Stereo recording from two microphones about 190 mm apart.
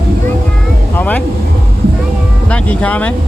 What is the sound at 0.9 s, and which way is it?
Speech, 10° left (ahead or behind).